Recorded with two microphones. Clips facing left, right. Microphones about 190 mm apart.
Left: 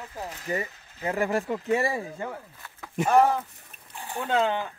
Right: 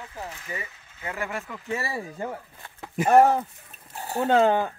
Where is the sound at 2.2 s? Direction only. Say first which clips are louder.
Right 2 dB; 25° right (ahead or behind).